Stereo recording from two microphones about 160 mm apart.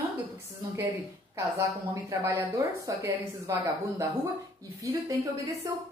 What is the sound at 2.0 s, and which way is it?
A woman's voice, 20° right (ahead or behind).